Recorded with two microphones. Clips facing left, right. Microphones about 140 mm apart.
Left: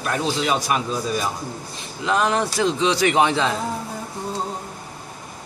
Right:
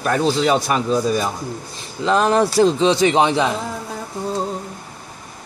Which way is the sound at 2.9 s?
25° right (ahead or behind).